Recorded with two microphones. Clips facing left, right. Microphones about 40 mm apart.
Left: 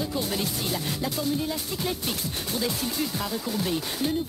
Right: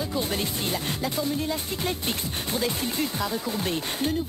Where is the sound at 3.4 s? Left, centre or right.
Right.